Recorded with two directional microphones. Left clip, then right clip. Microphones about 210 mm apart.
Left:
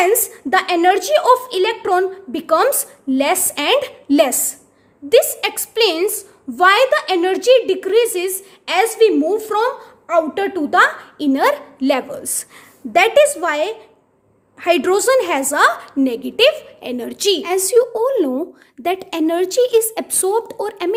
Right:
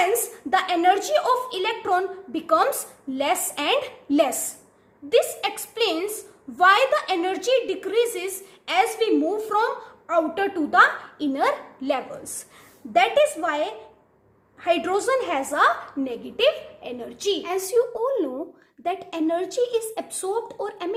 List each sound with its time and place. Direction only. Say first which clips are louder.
0.5 s a woman's voice: left 5 dB; 40° left (ahead or behind)